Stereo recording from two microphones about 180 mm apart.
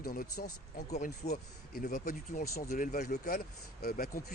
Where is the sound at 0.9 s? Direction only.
40° left (ahead or behind).